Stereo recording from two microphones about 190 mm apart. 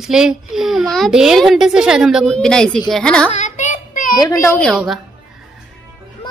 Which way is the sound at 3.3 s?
40° left (ahead or behind).